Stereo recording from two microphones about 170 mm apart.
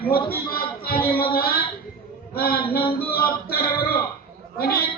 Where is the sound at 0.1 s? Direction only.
60° left (ahead or behind).